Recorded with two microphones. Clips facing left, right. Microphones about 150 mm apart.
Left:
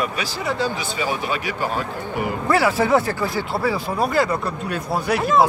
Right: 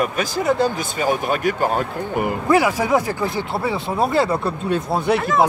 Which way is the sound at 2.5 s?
15° right (ahead or behind).